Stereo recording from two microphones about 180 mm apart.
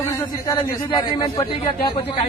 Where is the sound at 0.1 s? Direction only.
20° left (ahead or behind).